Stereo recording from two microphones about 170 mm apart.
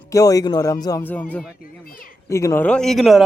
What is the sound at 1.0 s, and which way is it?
A man's voice, 10° left (ahead or behind).